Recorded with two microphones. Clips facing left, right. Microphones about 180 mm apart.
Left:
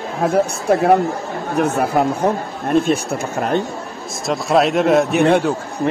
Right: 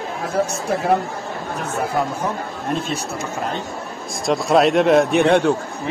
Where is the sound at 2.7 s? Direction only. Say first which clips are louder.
Left 10 dB; 55° left (ahead or behind).